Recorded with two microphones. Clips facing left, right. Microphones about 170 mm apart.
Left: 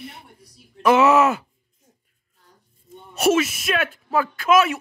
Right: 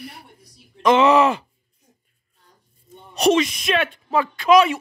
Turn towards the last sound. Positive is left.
turn(degrees=5)  # may be behind; listen again after turning